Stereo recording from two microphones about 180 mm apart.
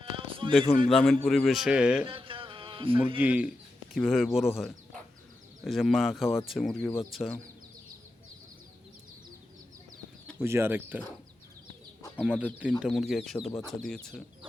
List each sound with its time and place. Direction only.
0.0 s a sound: 30° right (ahead or behind)
0.9 s speech: centre (ahead or behind)
2.0 s music: 30° right (ahead or behind)
3.2 s speech: 10° right (ahead or behind)
10.3 s speech: 15° right (ahead or behind)
12.1 s speech: 5° right (ahead or behind)